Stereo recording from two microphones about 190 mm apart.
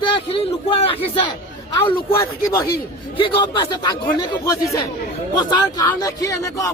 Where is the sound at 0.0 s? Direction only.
25° left (ahead or behind).